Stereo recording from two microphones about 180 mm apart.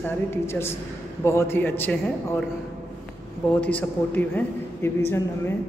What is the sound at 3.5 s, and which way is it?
A man's voice, 10° left (ahead or behind).